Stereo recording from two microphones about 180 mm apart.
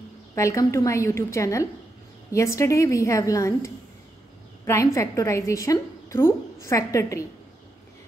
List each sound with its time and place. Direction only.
0.3 s a woman's voice: 15° left (ahead or behind)